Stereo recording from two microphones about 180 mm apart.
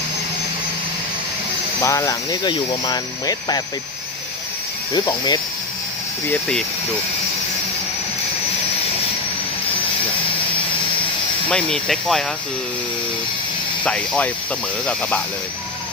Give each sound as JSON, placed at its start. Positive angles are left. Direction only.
{"t": 1.8, "sound": "speech", "side_deg": 15}
{"t": 4.9, "sound": "speech", "side_deg": 25}
{"t": 6.3, "sound": "speech", "side_deg": 5}
{"t": 11.4, "sound": "speech", "side_deg": 5}
{"t": 13.8, "sound": "speech", "side_deg": 5}